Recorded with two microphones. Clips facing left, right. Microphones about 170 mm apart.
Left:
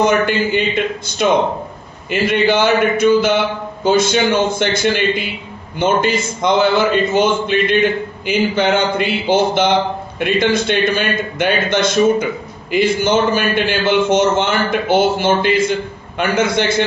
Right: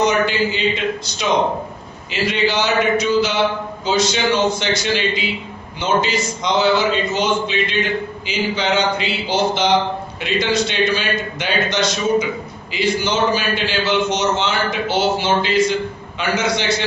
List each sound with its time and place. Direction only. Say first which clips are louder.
0.0 s a man's voice: left 2 dB; 55° left (ahead or behind)
2.0 s a man's voice: left 5 dB; 55° left (ahead or behind)